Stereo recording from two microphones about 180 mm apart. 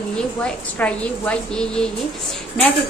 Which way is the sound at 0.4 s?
5° left (ahead or behind).